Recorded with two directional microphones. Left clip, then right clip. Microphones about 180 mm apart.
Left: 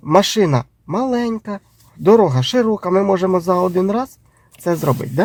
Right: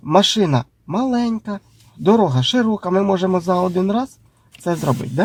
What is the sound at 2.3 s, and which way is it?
Speech, 40° left (ahead or behind).